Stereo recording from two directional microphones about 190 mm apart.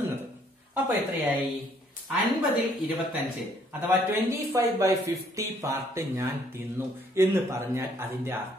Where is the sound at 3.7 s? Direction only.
10° right (ahead or behind).